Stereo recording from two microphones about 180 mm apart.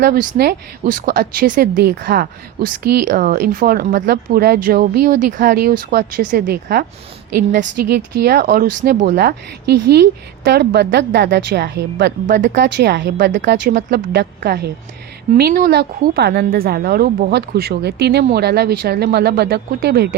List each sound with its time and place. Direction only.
0.0 s a woman's voice: 60° right (ahead or behind)
2.0 s a woman's voice: 65° right (ahead or behind)
5.5 s a woman's voice: 65° right (ahead or behind)
7.9 s a woman's voice: 65° right (ahead or behind); by 9.0 s 45° right (ahead or behind)
9.0 s a woman's voice: 65° right (ahead or behind)
12.2 s a woman's voice: 45° right (ahead or behind)
12.5 s a woman's voice: 70° right (ahead or behind)